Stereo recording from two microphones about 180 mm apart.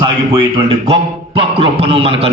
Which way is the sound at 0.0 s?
30° right (ahead or behind).